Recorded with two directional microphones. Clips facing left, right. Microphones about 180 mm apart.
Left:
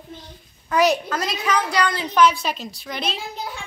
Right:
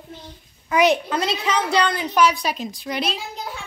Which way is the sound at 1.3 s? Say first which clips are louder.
Even; 25° right (ahead or behind).